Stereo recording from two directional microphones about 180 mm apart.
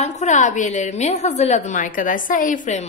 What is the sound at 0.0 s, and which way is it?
A woman's voice, 40° left (ahead or behind).